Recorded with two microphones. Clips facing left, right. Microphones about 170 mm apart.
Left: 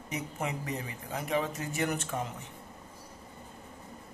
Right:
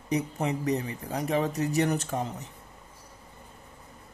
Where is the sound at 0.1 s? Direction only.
35° right (ahead or behind).